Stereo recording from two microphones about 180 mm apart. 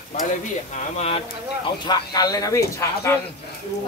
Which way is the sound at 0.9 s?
35° left (ahead or behind).